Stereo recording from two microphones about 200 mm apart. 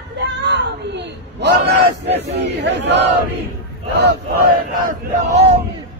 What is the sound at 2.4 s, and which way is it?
Speech, 65° right (ahead or behind).